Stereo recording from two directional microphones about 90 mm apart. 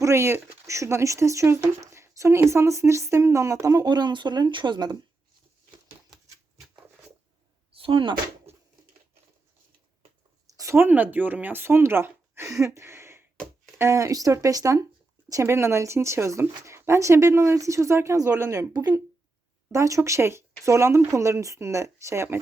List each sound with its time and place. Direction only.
0.0 s speech: 30° right (ahead or behind)
3.8 s speech: 55° right (ahead or behind)
7.8 s speech: 70° right (ahead or behind)
10.4 s a sound: 40° right (ahead or behind)
10.8 s speech: 20° right (ahead or behind)
12.5 s a sound: 35° right (ahead or behind)
13.7 s speech: 30° right (ahead or behind)
18.7 s speech: 45° right (ahead or behind)